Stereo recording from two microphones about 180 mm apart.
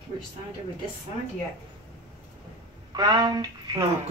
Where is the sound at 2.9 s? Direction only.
20° right (ahead or behind).